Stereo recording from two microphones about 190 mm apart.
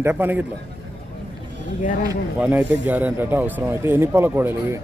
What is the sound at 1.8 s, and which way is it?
Speech, 45° left (ahead or behind).